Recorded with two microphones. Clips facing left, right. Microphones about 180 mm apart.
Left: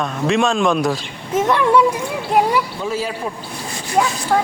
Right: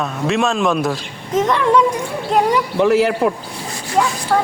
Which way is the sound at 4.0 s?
10° left (ahead or behind).